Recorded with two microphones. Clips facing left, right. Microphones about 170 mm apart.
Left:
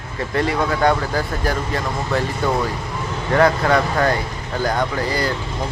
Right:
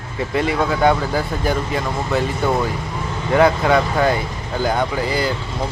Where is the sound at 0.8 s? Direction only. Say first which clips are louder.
Right 2 dB; 5° right (ahead or behind).